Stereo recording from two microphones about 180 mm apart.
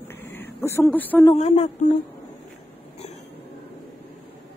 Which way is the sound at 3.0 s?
40° left (ahead or behind).